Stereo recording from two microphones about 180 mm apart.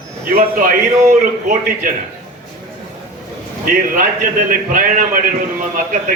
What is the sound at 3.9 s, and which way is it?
Speech, 50° right (ahead or behind).